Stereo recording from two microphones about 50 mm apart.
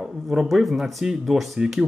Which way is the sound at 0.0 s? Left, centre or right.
Centre.